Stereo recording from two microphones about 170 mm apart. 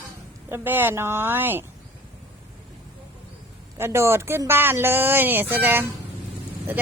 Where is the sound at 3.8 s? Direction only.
15° right (ahead or behind).